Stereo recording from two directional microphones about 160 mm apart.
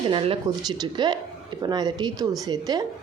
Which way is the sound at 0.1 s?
35° right (ahead or behind).